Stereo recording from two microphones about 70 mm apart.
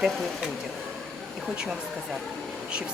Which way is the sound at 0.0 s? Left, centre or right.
Centre.